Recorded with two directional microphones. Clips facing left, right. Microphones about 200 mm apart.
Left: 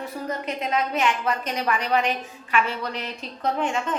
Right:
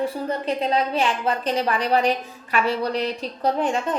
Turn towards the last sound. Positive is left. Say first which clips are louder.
# right 3 dB
turn(degrees=-35)  # may be behind; listen again after turning